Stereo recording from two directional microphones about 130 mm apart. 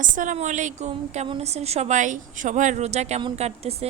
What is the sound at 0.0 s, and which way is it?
A woman's voice, 75° right (ahead or behind).